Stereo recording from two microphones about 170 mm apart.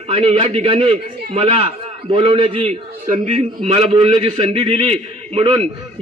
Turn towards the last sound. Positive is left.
turn(degrees=-35)  # may be behind; listen again after turning